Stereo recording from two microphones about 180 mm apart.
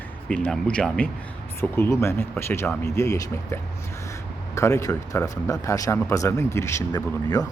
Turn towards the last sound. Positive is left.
turn(degrees=20)  # may be behind; listen again after turning